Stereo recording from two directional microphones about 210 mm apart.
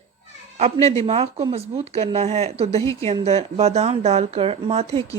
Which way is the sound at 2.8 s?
15° left (ahead or behind).